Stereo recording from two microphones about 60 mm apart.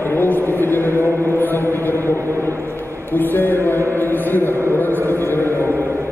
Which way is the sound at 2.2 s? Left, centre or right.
Right.